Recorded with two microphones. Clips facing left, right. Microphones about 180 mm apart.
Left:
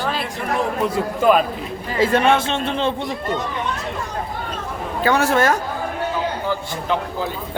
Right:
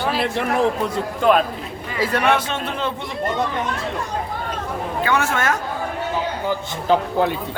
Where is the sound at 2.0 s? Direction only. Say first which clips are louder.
Left 3 dB; 25° left (ahead or behind).